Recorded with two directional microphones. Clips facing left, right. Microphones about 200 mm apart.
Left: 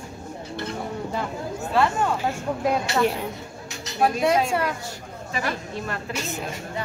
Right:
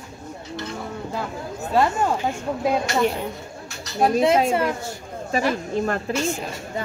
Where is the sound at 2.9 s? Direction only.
Centre (ahead or behind).